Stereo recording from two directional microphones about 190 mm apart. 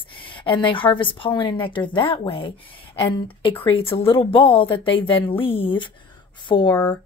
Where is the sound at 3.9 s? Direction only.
30° left (ahead or behind).